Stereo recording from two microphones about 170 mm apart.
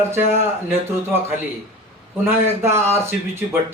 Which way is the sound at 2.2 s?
15° right (ahead or behind).